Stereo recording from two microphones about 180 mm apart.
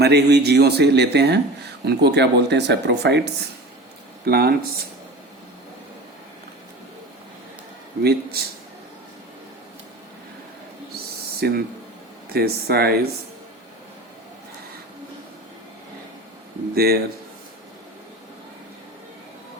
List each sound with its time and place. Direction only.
0.0 s speech: 65° right (ahead or behind)
4.3 s speech: 60° right (ahead or behind)
8.4 s speech: 60° right (ahead or behind)
11.3 s speech: 60° right (ahead or behind)
16.7 s speech: 60° right (ahead or behind)